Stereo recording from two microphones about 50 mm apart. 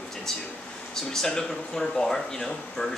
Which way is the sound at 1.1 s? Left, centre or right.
Centre.